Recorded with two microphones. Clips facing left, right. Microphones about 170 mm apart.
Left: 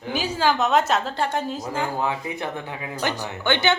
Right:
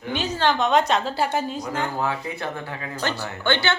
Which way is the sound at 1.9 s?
15° left (ahead or behind).